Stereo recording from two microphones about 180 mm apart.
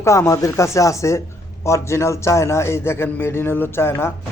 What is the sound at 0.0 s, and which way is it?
A man's voice, 15° left (ahead or behind).